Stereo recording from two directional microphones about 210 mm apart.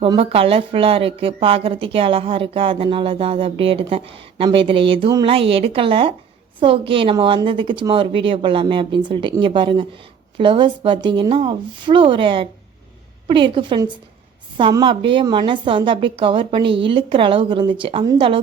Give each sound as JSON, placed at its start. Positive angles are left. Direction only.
{"t": 0.0, "sound": "speech", "side_deg": -25}